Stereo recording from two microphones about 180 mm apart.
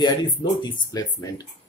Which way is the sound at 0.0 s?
25° left (ahead or behind).